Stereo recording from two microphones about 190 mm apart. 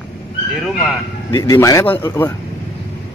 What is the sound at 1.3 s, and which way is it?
Speech, 20° left (ahead or behind).